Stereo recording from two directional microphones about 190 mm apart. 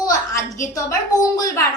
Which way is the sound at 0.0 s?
20° left (ahead or behind).